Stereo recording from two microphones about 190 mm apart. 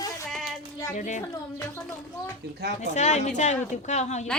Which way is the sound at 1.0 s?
40° left (ahead or behind).